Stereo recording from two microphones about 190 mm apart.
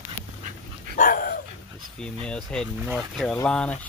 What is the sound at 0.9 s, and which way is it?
Dog, 45° left (ahead or behind).